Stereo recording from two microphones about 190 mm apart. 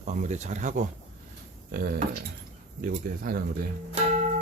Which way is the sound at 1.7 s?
55° right (ahead or behind).